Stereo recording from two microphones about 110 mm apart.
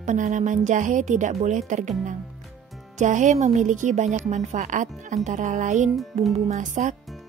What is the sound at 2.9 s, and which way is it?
Speech, 90° right.